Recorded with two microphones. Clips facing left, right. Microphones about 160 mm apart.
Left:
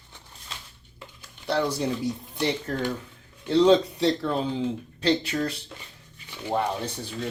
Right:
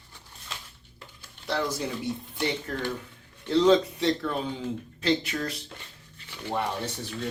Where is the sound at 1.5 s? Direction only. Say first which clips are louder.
Left 4 dB; 30° left (ahead or behind).